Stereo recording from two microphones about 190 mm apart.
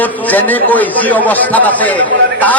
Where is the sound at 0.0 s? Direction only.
10° left (ahead or behind).